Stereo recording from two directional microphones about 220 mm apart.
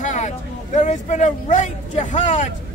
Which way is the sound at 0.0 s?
30° left (ahead or behind).